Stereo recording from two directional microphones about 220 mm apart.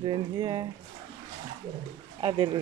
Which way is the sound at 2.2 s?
20° right (ahead or behind).